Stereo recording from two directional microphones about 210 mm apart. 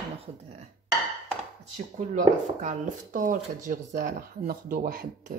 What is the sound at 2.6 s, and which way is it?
Speech, 40° right (ahead or behind).